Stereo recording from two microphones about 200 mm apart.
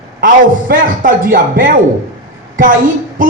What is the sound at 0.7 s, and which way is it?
A woman's voice, 45° right (ahead or behind).